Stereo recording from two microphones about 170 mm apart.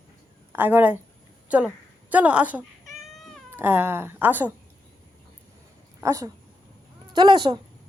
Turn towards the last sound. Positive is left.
turn(degrees=-25)  # may be behind; listen again after turning